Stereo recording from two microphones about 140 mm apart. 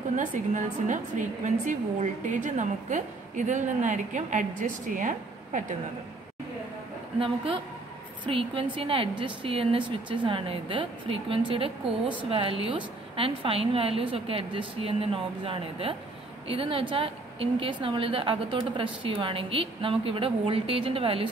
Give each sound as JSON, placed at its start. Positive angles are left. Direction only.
{"t": 0.1, "sound": "a woman's voice", "side_deg": -65}
{"t": 7.2, "sound": "a woman's voice", "side_deg": -40}